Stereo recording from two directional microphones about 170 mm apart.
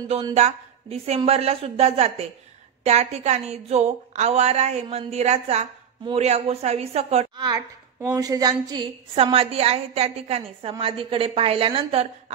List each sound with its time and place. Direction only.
0.3 s a woman's voice: 40° right (ahead or behind)
7.3 s a woman's voice: 25° right (ahead or behind)
9.1 s a woman's voice: 35° right (ahead or behind)